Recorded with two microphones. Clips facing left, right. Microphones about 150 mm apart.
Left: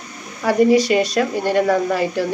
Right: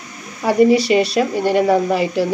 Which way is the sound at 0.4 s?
10° right (ahead or behind).